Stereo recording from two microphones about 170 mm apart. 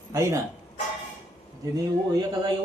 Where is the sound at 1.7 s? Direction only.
25° right (ahead or behind).